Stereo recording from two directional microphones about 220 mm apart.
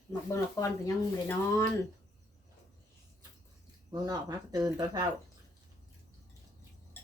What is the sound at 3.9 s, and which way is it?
Speech, 15° right (ahead or behind).